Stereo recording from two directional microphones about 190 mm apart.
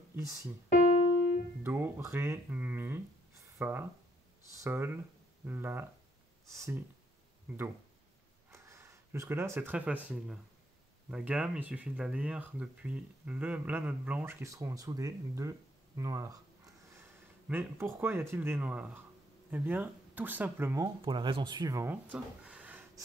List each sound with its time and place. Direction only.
0.1 s speech: 15° right (ahead or behind)
0.7 s keyboard: 40° left (ahead or behind)
1.6 s speech: 10° right (ahead or behind)
8.5 s speech: 15° right (ahead or behind)
16.0 s a sound: 15° right (ahead or behind)
17.5 s speech: 10° right (ahead or behind)